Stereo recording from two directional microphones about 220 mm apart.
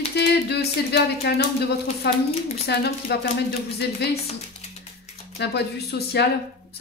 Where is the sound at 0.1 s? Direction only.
50° left (ahead or behind).